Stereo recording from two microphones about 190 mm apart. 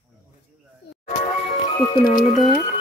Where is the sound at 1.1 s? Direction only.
30° left (ahead or behind).